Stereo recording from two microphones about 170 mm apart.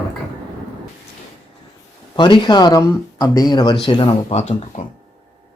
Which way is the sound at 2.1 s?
25° left (ahead or behind).